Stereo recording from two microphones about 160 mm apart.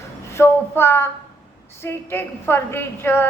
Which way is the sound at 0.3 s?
15° left (ahead or behind).